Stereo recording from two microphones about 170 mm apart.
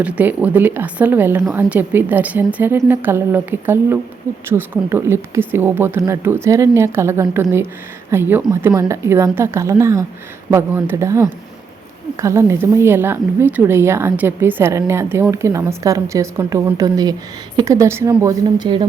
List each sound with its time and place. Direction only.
0.0 s a woman's voice: 10° right (ahead or behind); by 18.9 s 25° right (ahead or behind)